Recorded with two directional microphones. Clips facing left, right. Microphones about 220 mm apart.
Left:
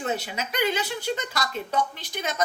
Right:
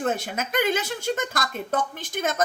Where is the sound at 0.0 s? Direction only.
50° right (ahead or behind).